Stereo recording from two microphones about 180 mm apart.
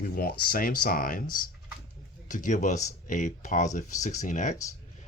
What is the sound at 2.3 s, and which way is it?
Speech, 45° left (ahead or behind).